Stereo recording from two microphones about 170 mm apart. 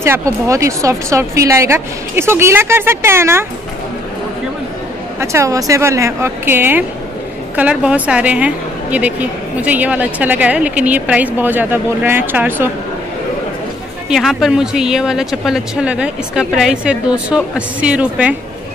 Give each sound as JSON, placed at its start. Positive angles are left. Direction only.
{"t": 0.0, "sound": "a woman's voice", "side_deg": -15}
{"t": 5.2, "sound": "a woman's voice", "side_deg": -15}
{"t": 14.0, "sound": "speech", "side_deg": 0}